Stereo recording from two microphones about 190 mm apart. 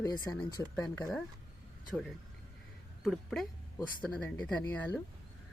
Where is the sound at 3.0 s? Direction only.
Centre (ahead or behind).